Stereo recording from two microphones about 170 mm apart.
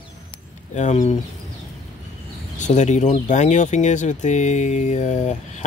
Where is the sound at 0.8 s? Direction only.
45° left (ahead or behind).